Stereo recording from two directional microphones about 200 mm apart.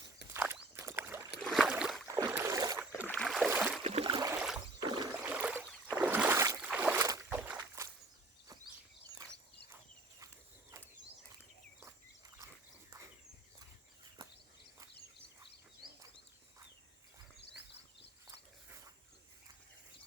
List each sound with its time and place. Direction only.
0.5 s rowboat: 15° right (ahead or behind)
1.4 s boat: centre (ahead or behind)
2.0 s boat: 20° right (ahead or behind)
2.3 s rowboat: 15° right (ahead or behind)
2.9 s boat: 10° left (ahead or behind)
3.8 s a sound: 30° right (ahead or behind)
4.3 s rowboat: 5° right (ahead or behind)
4.8 s rowboat: 20° right (ahead or behind)
5.2 s boat: 10° right (ahead or behind)
6.7 s rowboat: 10° right (ahead or behind)
17.3 s a sound: 60° left (ahead or behind)